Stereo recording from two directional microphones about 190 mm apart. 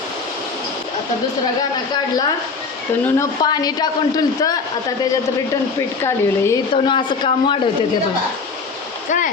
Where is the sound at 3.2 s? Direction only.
20° left (ahead or behind).